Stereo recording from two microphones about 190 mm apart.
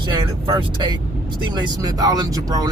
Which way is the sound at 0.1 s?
25° right (ahead or behind).